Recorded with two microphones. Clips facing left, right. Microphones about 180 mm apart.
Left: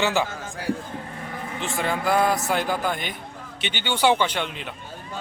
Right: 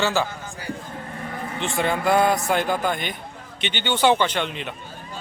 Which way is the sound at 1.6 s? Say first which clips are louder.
Right 3 dB; centre (ahead or behind).